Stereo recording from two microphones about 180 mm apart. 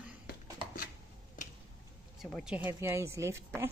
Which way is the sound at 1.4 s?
45° left (ahead or behind).